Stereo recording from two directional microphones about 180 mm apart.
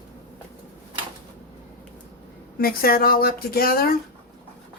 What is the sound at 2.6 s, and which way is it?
Speech, 55° left (ahead or behind).